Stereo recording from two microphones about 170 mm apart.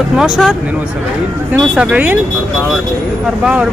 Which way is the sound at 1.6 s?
5° right (ahead or behind).